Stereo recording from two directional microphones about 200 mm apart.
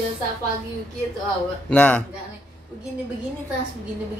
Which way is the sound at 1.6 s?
10° left (ahead or behind).